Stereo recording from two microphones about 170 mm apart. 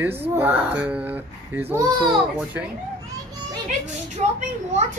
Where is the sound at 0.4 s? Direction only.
10° right (ahead or behind).